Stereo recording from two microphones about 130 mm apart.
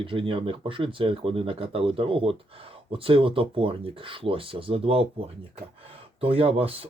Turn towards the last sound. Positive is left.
turn(degrees=-45)  # may be behind; listen again after turning